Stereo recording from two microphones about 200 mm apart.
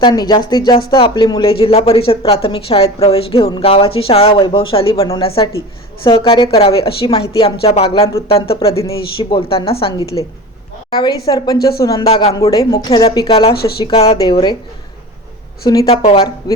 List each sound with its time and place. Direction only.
0.0 s speech: 20° left (ahead or behind)
15.6 s speech: 15° left (ahead or behind)
15.9 s speech: 30° left (ahead or behind)